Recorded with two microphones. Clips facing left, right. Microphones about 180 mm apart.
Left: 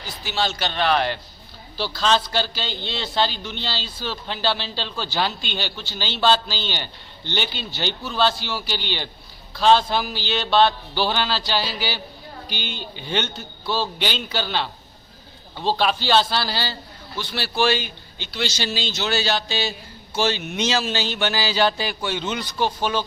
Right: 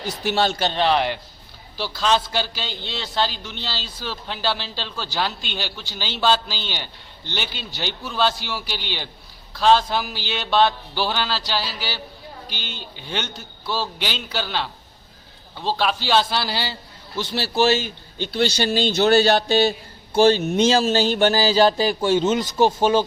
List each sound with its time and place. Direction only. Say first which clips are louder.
0.0 s a man's voice: right 5 dB; 65° right (ahead or behind)
0.6 s a man's voice: right 2 dB; 30° right (ahead or behind); by 14.7 s 5° right (ahead or behind)
15.8 s a man's voice: even; 5° right (ahead or behind)
17.2 s a man's voice: right 3 dB; 40° right (ahead or behind)